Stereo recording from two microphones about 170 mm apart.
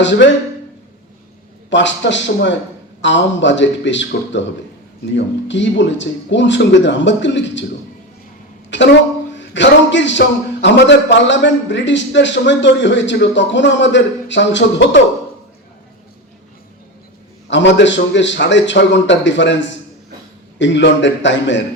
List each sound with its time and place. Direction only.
0.0 s a man's voice: 90° left
1.7 s a man's voice: 90° left
8.7 s a man's voice: 90° left
17.5 s a man's voice: 90° left